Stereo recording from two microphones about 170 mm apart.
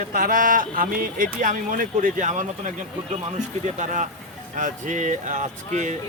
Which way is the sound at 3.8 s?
45° right (ahead or behind).